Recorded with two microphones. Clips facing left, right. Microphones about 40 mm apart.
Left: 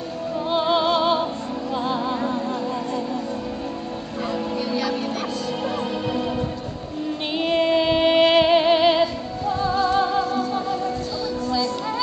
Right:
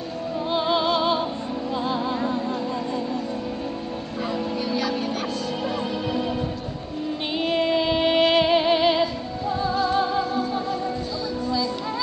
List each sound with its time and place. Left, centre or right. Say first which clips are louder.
0.5 s music: left 2 dB; centre
4.3 s music: left 1 dB; centre
6.0 s music: left 1 dB; centre
7.3 s female singing: left 3 dB; centre
11.4 s music: left 1 dB; centre